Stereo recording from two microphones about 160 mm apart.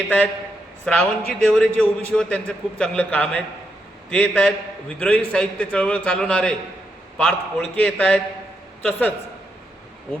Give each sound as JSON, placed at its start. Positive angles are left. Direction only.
{"t": 0.9, "sound": "a man's voice", "side_deg": 10}